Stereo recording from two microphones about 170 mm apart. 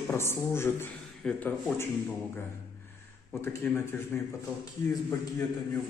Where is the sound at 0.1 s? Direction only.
15° left (ahead or behind).